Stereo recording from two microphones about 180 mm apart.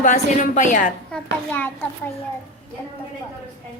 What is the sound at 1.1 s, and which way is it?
Speech, 10° left (ahead or behind).